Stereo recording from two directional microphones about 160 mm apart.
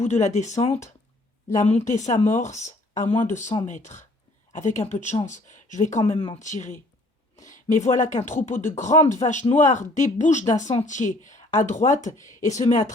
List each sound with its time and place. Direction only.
0.0 s speech: 50° left (ahead or behind)
6.1 s speech: 25° left (ahead or behind)
6.4 s speech: 50° left (ahead or behind)